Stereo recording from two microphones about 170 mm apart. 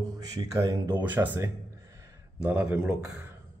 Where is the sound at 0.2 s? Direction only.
25° right (ahead or behind).